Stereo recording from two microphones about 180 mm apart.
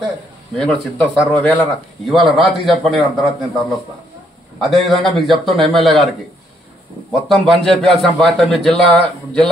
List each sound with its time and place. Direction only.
0.6 s a man's voice: 5° left (ahead or behind)
4.6 s a man's voice: centre (ahead or behind)
7.1 s a man's voice: centre (ahead or behind)